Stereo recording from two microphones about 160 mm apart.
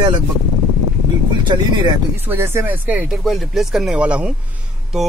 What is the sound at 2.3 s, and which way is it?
Speech, 15° right (ahead or behind).